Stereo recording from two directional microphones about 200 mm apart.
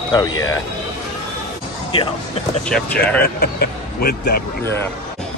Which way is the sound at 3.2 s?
50° left (ahead or behind).